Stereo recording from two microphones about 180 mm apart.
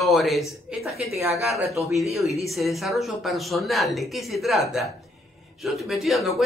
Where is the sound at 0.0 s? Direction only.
Centre (ahead or behind).